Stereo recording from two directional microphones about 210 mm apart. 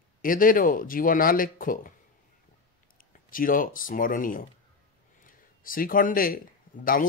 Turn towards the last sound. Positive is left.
turn(degrees=40)  # may be behind; listen again after turning